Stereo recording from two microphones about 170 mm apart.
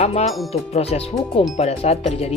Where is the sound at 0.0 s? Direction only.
40° left (ahead or behind).